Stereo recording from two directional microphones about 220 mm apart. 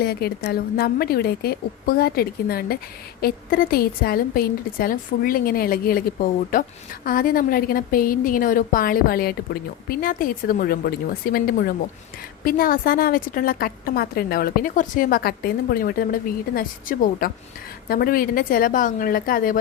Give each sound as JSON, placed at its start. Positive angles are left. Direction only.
{"t": 0.0, "sound": "a woman's voice", "side_deg": 45}